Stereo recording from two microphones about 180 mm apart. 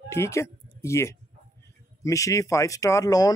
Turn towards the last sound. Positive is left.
turn(degrees=20)  # may be behind; listen again after turning